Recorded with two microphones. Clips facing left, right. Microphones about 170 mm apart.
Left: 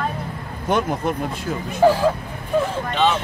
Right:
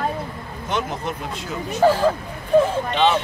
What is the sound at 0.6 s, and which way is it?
Speech, 50° left (ahead or behind).